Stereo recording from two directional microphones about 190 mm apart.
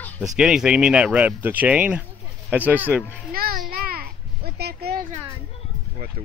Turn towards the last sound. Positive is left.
turn(degrees=-55)  # may be behind; listen again after turning